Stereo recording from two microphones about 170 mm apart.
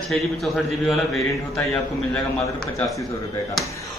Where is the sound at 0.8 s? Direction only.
Centre (ahead or behind).